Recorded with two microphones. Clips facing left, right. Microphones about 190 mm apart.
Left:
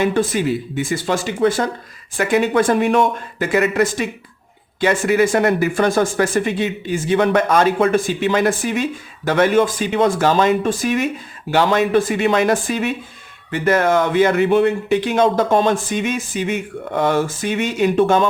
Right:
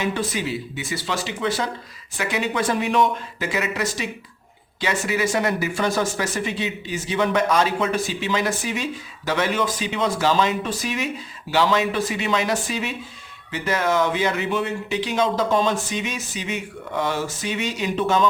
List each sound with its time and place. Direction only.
0.0 s speech: 50° left (ahead or behind)